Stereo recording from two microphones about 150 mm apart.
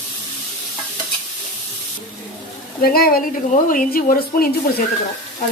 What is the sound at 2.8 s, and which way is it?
Speech, 85° left.